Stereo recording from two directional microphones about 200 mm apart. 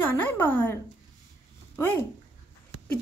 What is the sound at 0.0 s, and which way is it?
Speech, 10° left (ahead or behind).